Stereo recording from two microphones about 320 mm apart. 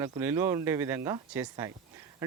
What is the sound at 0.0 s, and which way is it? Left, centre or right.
Speech, centre.